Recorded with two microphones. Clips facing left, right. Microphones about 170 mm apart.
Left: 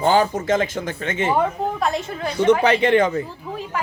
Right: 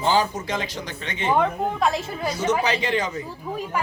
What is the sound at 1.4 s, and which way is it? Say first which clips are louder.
Speech: left 1 dB; centre (ahead or behind).